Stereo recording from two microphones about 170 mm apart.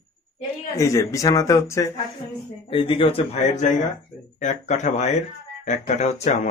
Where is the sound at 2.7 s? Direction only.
30° left (ahead or behind).